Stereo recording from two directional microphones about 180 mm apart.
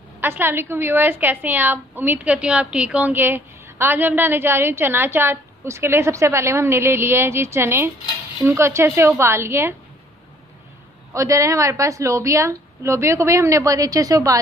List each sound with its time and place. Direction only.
0.2 s a woman's voice: 10° right (ahead or behind)
11.1 s a woman's voice: 15° right (ahead or behind)